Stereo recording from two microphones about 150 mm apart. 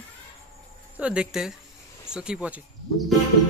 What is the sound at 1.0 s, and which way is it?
A man's voice, 5° right (ahead or behind).